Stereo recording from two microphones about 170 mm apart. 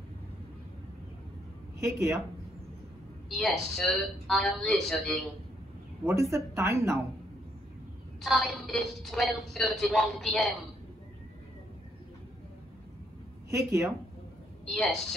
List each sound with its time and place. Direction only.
1.8 s speech: 15° right (ahead or behind)
3.3 s a woman's voice: centre (ahead or behind)
6.0 s speech: 15° right (ahead or behind)
8.2 s a woman's voice: centre (ahead or behind)
13.5 s speech: 15° right (ahead or behind)
14.7 s a woman's voice: centre (ahead or behind)